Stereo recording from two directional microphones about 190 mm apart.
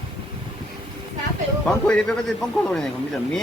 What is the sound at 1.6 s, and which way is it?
Speech, 5° left (ahead or behind).